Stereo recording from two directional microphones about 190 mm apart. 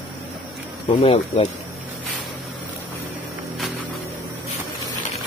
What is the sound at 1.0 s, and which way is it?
Speech, 35° left (ahead or behind).